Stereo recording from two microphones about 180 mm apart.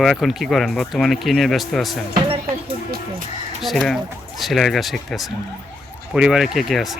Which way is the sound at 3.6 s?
Centre (ahead or behind).